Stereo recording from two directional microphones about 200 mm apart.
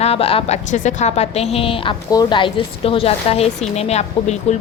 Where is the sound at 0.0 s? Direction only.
30° left (ahead or behind).